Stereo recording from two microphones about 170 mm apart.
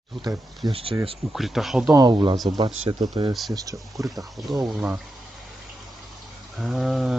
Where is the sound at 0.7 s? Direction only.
35° right (ahead or behind).